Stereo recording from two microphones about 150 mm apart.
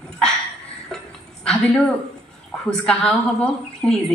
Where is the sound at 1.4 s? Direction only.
5° left (ahead or behind).